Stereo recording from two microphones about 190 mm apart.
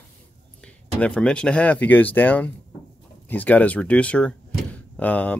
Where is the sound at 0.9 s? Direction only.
5° left (ahead or behind).